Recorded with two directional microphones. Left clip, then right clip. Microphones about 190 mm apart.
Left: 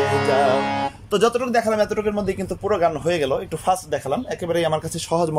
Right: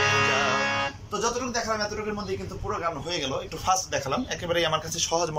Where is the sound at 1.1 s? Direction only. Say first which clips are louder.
Left 10 dB; 55° left (ahead or behind).